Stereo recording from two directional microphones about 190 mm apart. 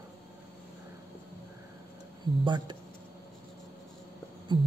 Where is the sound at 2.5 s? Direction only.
25° right (ahead or behind).